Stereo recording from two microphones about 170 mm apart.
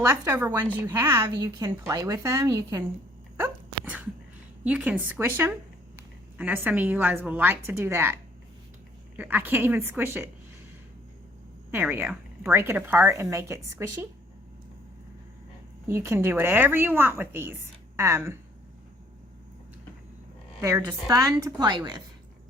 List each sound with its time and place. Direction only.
0.1 s a woman's voice: 10° right (ahead or behind)
1.4 s a woman's voice: 25° right (ahead or behind)
3.3 s sneeze: 10° right (ahead or behind)
4.6 s a woman's voice: 5° right (ahead or behind)
9.1 s a woman's voice: 10° right (ahead or behind)
11.7 s a woman's voice: 10° right (ahead or behind)
15.9 s a woman's voice: 15° right (ahead or behind)
20.6 s a woman's voice: 20° right (ahead or behind)